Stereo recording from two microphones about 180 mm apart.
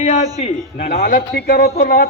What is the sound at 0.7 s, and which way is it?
A man's voice, 55° left (ahead or behind).